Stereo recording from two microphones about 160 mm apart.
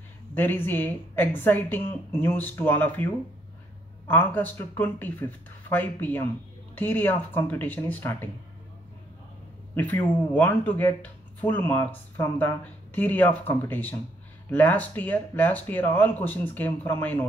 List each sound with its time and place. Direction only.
0.3 s speech: 10° left (ahead or behind)
4.1 s speech: 10° left (ahead or behind)
9.8 s speech: 10° left (ahead or behind)